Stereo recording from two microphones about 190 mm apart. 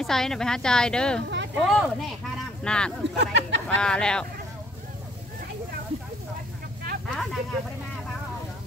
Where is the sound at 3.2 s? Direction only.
70° right (ahead or behind).